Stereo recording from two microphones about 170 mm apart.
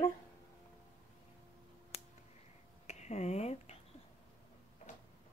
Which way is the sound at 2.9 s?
40° left (ahead or behind).